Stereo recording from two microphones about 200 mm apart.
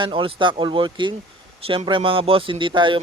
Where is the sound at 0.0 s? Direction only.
25° right (ahead or behind).